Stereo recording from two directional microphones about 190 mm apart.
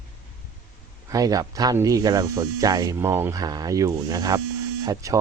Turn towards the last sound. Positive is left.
turn(degrees=-15)  # may be behind; listen again after turning